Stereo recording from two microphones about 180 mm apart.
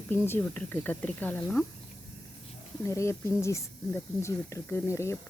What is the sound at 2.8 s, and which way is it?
Speech, 15° left (ahead or behind).